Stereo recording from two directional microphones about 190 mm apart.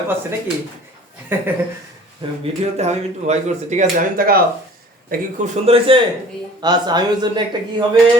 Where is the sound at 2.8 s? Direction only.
35° right (ahead or behind).